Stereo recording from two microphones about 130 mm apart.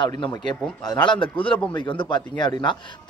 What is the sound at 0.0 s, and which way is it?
A man's voice, 35° left (ahead or behind).